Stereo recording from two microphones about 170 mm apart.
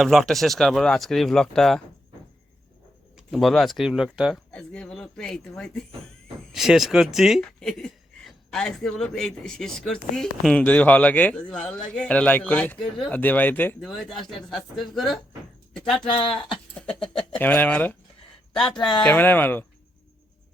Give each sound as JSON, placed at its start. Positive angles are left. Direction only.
{"t": 0.0, "sound": "speech", "side_deg": 0}
{"t": 3.2, "sound": "speech", "side_deg": 0}
{"t": 16.0, "sound": "speech", "side_deg": 25}
{"t": 16.7, "sound": "speech", "side_deg": 5}